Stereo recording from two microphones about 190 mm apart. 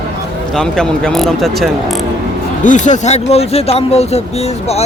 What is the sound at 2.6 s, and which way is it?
Speech, 40° left (ahead or behind).